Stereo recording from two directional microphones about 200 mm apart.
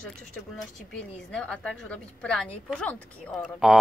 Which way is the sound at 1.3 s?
5° left (ahead or behind).